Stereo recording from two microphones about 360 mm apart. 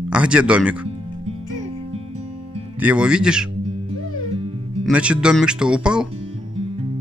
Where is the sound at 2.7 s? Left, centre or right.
Centre.